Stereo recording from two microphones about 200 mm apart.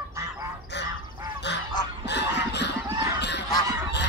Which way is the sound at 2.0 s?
60° left (ahead or behind).